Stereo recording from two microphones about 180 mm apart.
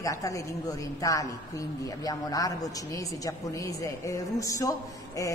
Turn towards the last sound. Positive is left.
turn(degrees=20)  # may be behind; listen again after turning